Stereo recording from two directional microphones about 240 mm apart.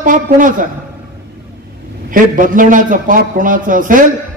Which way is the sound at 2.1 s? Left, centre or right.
Right.